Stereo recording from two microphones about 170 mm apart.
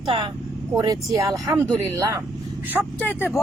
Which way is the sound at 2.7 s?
10° right (ahead or behind).